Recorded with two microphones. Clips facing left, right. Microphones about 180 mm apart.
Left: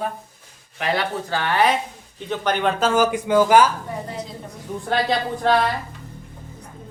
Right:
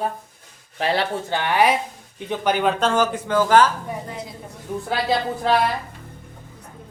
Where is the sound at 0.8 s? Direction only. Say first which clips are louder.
Right 1 dB; 30° right (ahead or behind).